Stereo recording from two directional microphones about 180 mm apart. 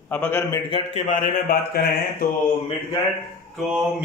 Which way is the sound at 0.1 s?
10° left (ahead or behind).